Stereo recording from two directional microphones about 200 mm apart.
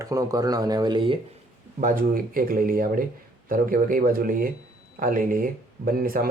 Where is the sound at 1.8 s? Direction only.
40° right (ahead or behind).